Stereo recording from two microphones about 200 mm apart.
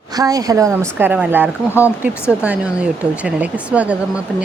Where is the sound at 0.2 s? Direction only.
20° right (ahead or behind).